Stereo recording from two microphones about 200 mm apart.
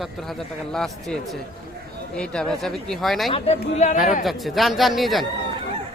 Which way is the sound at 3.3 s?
30° left (ahead or behind).